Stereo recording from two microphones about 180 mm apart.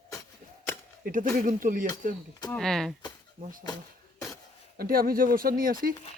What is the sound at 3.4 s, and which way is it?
Speech, 50° right (ahead or behind).